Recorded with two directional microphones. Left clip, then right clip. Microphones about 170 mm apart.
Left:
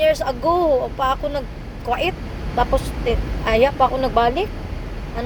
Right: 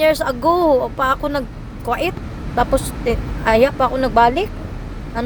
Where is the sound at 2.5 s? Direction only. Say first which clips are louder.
Right 2 dB; 30° right (ahead or behind).